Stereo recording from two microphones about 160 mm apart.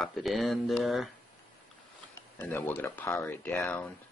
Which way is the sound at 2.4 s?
15° left (ahead or behind).